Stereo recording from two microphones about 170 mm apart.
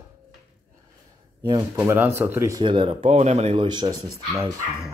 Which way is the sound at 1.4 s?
25° right (ahead or behind).